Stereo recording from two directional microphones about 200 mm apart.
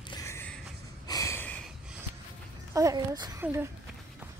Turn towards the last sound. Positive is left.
turn(degrees=-10)  # may be behind; listen again after turning